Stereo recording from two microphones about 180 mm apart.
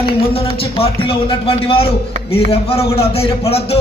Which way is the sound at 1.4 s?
30° left (ahead or behind).